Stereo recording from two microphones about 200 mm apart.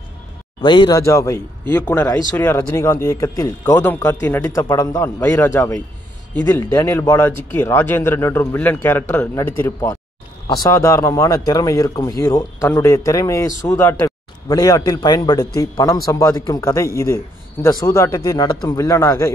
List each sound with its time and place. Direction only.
0.6 s speech: 25° left (ahead or behind)